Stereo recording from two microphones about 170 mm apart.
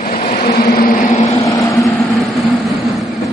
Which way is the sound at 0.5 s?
60° left (ahead or behind).